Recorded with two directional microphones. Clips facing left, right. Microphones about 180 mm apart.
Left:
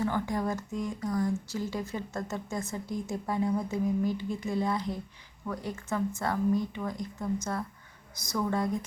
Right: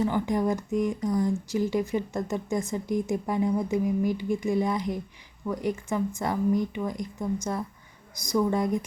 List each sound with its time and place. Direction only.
0.0 s speech: 15° right (ahead or behind)